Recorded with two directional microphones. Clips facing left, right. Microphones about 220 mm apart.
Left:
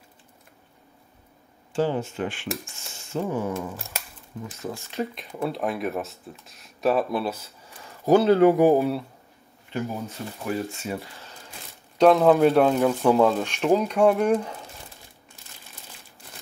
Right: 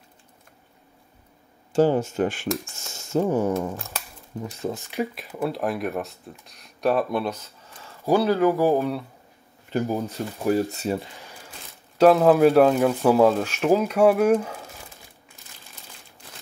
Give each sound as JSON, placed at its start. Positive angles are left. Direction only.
{"t": 1.7, "sound": "speech", "side_deg": -45}
{"t": 4.6, "sound": "speech", "side_deg": -25}
{"t": 4.9, "sound": "speech", "side_deg": -5}
{"t": 7.8, "sound": "a sound", "side_deg": 15}
{"t": 8.3, "sound": "speech", "side_deg": 30}
{"t": 8.5, "sound": "speech", "side_deg": 15}
{"t": 9.7, "sound": "speech", "side_deg": -40}
{"t": 12.0, "sound": "speech", "side_deg": -5}